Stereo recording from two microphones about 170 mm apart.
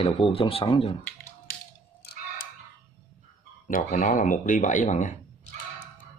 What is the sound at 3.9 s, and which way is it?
Speech, 50° left (ahead or behind).